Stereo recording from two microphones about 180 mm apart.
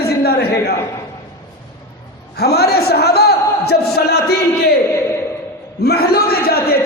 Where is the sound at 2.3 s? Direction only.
60° left (ahead or behind).